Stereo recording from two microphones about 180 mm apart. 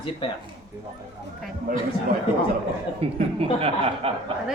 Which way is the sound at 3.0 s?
30° right (ahead or behind).